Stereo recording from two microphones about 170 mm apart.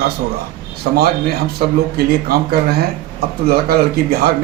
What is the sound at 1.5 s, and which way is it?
A man's voice, 65° right (ahead or behind).